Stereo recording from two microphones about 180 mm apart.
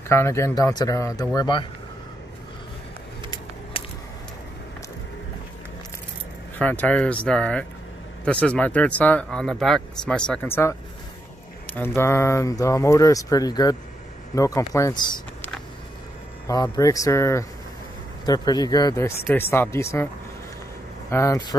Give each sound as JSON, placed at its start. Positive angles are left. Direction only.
{"t": 0.1, "sound": "a man's voice", "side_deg": 15}
{"t": 3.8, "sound": "a sound", "side_deg": 30}
{"t": 6.6, "sound": "speech", "side_deg": 10}
{"t": 11.6, "sound": "a sound", "side_deg": 10}
{"t": 12.0, "sound": "speech", "side_deg": 15}
{"t": 21.1, "sound": "speech", "side_deg": 15}